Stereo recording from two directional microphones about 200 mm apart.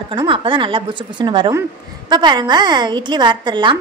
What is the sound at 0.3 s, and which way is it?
A woman's voice, 25° right (ahead or behind).